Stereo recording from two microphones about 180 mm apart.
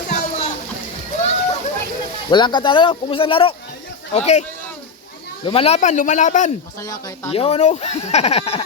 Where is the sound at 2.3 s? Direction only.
25° left (ahead or behind).